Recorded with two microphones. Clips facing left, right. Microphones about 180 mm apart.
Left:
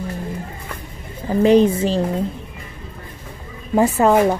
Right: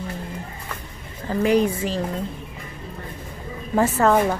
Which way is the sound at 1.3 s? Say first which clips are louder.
Left 6 dB; 25° left (ahead or behind).